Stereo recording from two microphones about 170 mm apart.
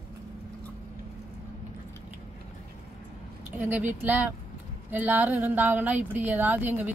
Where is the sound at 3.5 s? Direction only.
10° right (ahead or behind).